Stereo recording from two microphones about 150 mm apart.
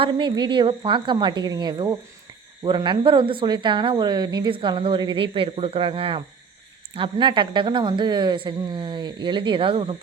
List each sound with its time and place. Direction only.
0.0 s speech: 30° right (ahead or behind)